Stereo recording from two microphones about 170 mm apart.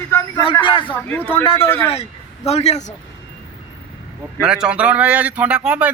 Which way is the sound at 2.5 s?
40° left (ahead or behind).